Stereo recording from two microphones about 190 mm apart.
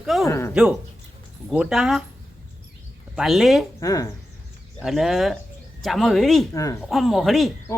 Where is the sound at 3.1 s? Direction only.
Centre (ahead or behind).